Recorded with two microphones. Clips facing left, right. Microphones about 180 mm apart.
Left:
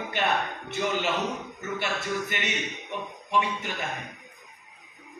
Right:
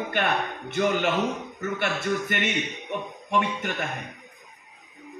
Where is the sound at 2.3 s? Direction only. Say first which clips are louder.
Right 4 dB; 55° right (ahead or behind).